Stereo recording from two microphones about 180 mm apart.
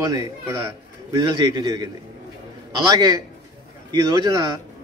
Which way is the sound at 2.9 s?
20° right (ahead or behind).